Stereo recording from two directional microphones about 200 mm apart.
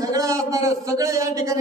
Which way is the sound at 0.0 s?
15° right (ahead or behind).